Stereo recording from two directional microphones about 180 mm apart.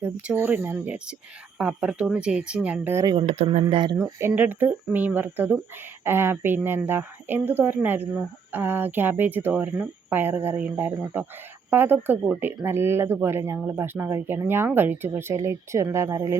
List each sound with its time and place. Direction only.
0.0 s speech: 10° right (ahead or behind)
3.2 s speech: 35° right (ahead or behind)
3.6 s speech: 25° right (ahead or behind)